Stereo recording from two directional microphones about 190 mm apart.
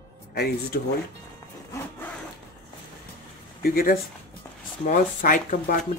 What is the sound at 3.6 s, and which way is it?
Speech, 50° left (ahead or behind).